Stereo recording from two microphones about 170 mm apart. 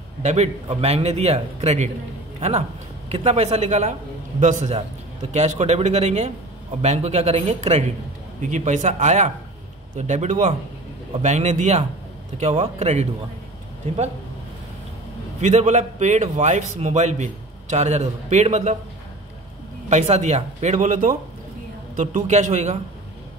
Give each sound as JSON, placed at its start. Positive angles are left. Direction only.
{"t": 0.2, "sound": "a man's voice", "side_deg": -40}
{"t": 3.1, "sound": "a man's voice", "side_deg": -40}
{"t": 15.4, "sound": "a man's voice", "side_deg": -45}
{"t": 19.9, "sound": "a man's voice", "side_deg": -40}